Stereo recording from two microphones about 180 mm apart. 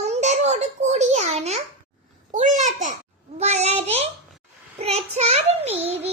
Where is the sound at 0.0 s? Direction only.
40° right (ahead or behind).